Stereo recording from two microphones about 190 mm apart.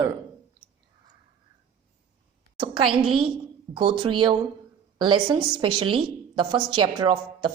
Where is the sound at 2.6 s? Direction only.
25° right (ahead or behind).